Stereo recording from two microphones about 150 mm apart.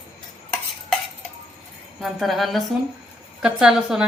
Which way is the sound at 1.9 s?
Centre (ahead or behind).